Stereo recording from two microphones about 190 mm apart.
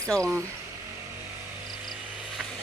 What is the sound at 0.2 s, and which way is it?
Speech, 5° left (ahead or behind).